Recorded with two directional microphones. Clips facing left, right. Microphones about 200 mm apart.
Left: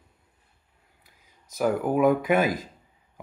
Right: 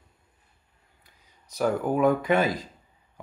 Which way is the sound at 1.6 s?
10° left (ahead or behind).